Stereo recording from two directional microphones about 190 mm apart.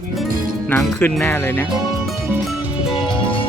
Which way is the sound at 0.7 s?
10° left (ahead or behind).